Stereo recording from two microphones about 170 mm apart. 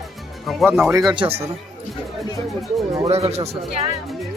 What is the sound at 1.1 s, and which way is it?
Speech, 30° right (ahead or behind).